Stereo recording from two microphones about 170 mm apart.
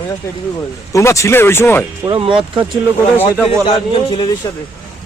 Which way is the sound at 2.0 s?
30° right (ahead or behind).